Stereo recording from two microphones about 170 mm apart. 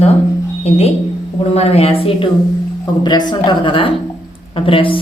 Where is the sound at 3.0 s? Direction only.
25° left (ahead or behind).